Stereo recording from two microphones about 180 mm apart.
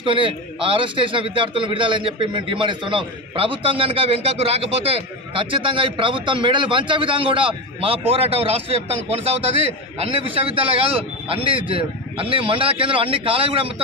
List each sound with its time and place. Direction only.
0.0 s a man's voice: 30° right (ahead or behind)